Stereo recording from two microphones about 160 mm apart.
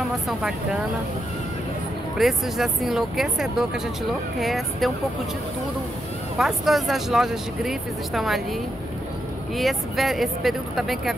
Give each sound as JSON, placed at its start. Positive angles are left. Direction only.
{"t": 0.3, "sound": "speech", "side_deg": -5}
{"t": 2.1, "sound": "speech", "side_deg": 0}
{"t": 6.3, "sound": "speech", "side_deg": 0}
{"t": 9.6, "sound": "speech", "side_deg": 0}